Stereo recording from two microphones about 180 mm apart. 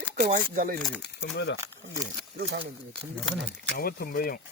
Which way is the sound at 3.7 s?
55° left (ahead or behind).